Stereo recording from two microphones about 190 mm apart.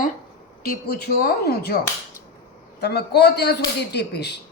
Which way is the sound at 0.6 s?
55° left (ahead or behind).